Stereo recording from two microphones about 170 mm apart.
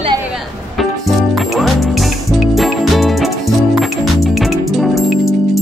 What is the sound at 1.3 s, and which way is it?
Music, centre (ahead or behind).